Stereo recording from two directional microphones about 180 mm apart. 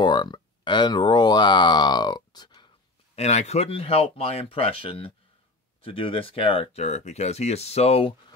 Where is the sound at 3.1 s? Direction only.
35° left (ahead or behind).